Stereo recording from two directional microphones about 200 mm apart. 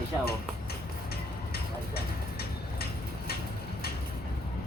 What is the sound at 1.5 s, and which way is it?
Tick-tock, 50° left (ahead or behind).